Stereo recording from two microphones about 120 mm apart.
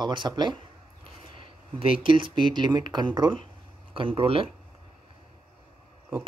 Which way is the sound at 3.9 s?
50° right (ahead or behind).